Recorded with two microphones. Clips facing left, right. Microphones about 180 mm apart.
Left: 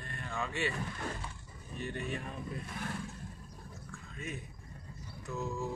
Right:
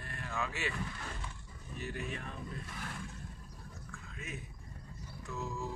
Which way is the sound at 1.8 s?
Centre (ahead or behind).